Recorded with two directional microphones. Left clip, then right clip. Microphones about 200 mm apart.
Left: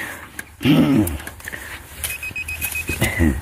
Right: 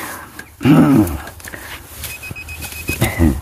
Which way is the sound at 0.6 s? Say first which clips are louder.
Right 5 dB; 20° right (ahead or behind).